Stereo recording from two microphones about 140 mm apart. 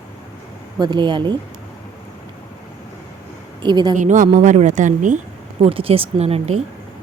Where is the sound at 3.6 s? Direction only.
30° right (ahead or behind).